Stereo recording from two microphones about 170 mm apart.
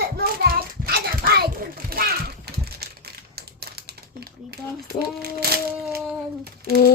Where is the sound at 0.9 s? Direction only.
65° right (ahead or behind).